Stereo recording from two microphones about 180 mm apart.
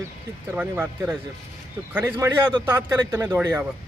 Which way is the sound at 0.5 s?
10° right (ahead or behind).